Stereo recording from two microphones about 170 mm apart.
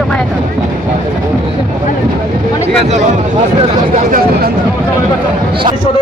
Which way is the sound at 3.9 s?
55° right (ahead or behind).